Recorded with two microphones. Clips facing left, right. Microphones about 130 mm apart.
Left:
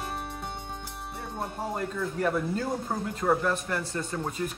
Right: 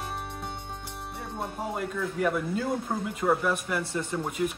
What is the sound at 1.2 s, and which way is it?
Speech, centre (ahead or behind).